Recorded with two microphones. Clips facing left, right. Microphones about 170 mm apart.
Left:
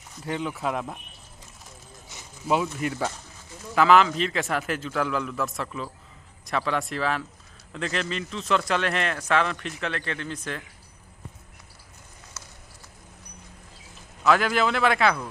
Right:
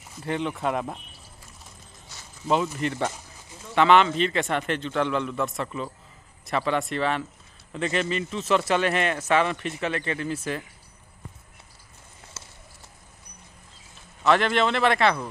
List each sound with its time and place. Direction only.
0.2 s speech: centre (ahead or behind)
2.4 s speech: 5° left (ahead or behind)
12.4 s a sound: 25° right (ahead or behind)
14.2 s speech: centre (ahead or behind)